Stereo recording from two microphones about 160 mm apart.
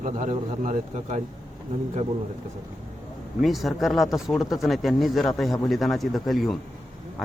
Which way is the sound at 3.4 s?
Centre (ahead or behind).